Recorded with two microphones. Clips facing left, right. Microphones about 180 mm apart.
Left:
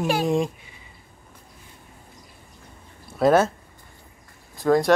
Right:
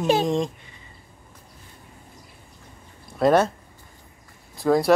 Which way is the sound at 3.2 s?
5° left (ahead or behind).